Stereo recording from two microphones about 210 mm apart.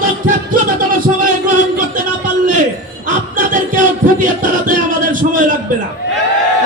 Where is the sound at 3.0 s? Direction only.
40° right (ahead or behind).